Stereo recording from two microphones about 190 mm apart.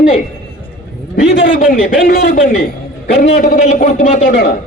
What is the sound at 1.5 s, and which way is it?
A man's voice, 45° left (ahead or behind).